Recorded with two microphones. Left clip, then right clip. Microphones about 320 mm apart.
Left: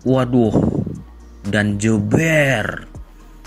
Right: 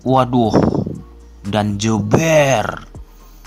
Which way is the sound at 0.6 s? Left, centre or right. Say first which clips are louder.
Right 4 dB; right.